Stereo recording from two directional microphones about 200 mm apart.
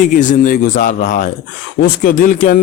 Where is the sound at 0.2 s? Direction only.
40° left (ahead or behind).